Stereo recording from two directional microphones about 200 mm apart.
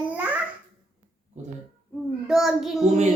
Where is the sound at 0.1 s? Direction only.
10° right (ahead or behind).